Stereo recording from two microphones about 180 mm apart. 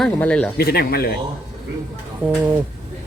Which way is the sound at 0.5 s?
60° left (ahead or behind).